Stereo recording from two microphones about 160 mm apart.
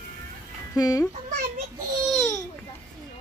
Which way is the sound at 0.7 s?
20° left (ahead or behind).